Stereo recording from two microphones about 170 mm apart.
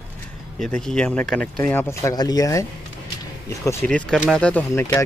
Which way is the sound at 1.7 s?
15° left (ahead or behind).